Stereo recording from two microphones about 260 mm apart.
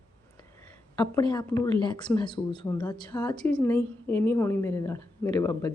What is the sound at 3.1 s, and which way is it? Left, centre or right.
A woman's voice, centre.